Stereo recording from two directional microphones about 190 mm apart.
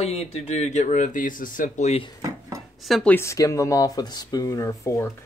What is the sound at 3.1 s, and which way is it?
Speech, 15° left (ahead or behind).